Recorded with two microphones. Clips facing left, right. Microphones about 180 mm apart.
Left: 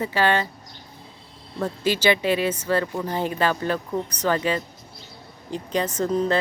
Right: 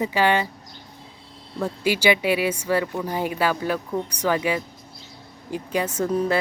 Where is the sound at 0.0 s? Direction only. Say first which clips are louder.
Right 1 dB; 15° right (ahead or behind).